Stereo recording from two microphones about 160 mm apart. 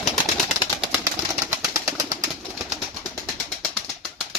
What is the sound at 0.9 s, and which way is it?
Bird, 15° right (ahead or behind).